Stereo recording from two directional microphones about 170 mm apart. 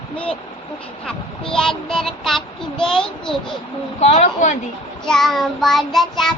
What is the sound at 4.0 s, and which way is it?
Speech, 40° left (ahead or behind).